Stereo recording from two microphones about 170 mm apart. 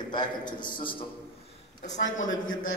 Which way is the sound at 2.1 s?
50° left (ahead or behind).